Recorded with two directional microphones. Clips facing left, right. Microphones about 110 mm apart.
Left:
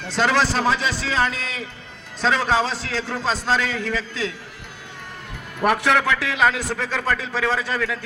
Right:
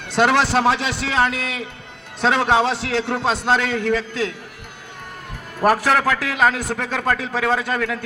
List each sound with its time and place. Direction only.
0.1 s a man's voice: 60° right (ahead or behind)
5.6 s a man's voice: 40° right (ahead or behind); by 7.9 s 55° right (ahead or behind)